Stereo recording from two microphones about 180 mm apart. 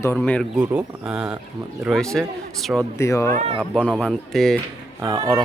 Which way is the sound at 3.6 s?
5° left (ahead or behind).